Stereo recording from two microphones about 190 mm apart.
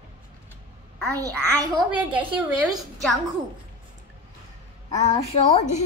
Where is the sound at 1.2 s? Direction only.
15° right (ahead or behind).